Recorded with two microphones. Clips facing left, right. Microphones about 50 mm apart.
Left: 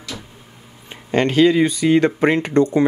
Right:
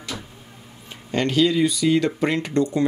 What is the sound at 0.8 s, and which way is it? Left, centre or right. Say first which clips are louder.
A man's voice: left 5 dB; left.